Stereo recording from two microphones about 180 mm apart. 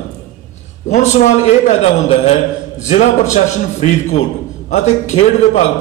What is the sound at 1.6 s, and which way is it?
A man's voice, 35° left (ahead or behind).